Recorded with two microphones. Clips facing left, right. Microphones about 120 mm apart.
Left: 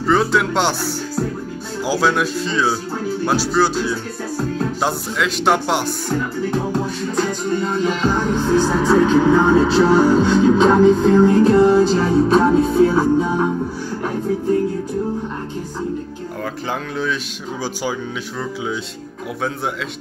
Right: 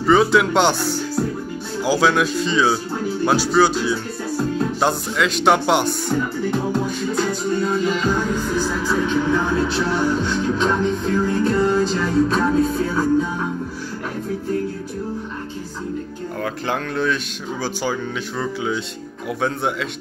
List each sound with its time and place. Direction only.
0.0 s speech: centre (ahead or behind)
7.2 s speech: 5° right (ahead or behind)
8.1 s speech: 25° left (ahead or behind)
11.7 s speech: 5° left (ahead or behind)
12.2 s music: 25° left (ahead or behind)
16.6 s speech: 5° left (ahead or behind)
18.4 s speech: centre (ahead or behind)